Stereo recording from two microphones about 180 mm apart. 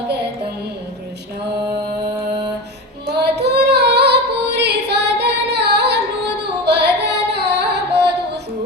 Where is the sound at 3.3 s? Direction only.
70° right (ahead or behind).